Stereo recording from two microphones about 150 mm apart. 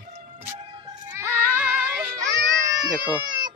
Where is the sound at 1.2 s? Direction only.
15° right (ahead or behind).